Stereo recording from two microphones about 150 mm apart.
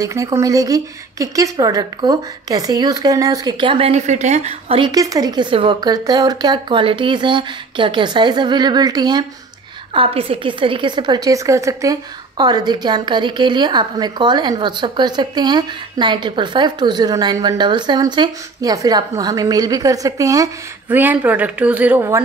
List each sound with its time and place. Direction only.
0.0 s a woman's voice: 20° right (ahead or behind); by 4.9 s 40° right (ahead or behind)
4.9 s a woman's voice: 25° right (ahead or behind)
9.9 s a woman's voice: 40° right (ahead or behind); by 20.4 s 20° right (ahead or behind)
20.9 s speech: 10° right (ahead or behind)